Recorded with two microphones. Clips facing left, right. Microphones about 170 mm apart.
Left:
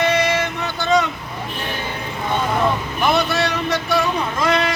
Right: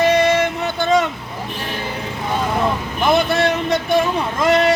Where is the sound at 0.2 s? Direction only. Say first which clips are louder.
Right 4 dB; 50° right (ahead or behind).